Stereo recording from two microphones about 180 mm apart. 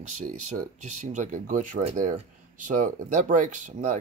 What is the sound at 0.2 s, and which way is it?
Speech, 40° right (ahead or behind).